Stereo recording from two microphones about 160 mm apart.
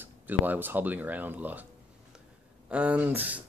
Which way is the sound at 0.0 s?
10° right (ahead or behind).